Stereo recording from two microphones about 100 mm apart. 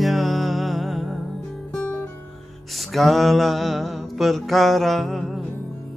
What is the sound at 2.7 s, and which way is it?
Mantra, centre (ahead or behind).